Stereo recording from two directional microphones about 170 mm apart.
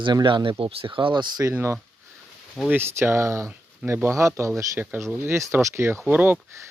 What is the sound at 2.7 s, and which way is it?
Speech, 15° right (ahead or behind).